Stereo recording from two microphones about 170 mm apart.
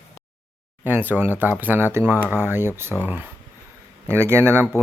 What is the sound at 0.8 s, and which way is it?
Speech, 10° right (ahead or behind).